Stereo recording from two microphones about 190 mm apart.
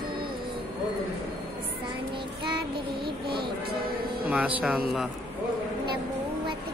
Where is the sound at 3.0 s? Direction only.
55° right (ahead or behind).